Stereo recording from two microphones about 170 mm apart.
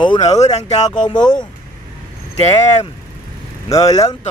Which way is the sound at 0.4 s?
40° left (ahead or behind).